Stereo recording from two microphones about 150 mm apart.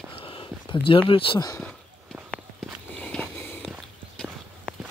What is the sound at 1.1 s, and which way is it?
Speech, 35° left (ahead or behind).